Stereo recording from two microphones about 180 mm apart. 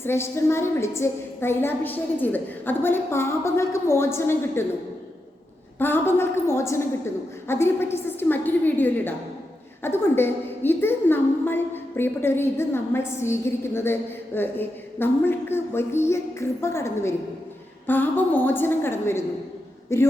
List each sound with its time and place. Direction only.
0.0 s a woman's voice: 15° left (ahead or behind)
5.8 s a woman's voice: 10° left (ahead or behind)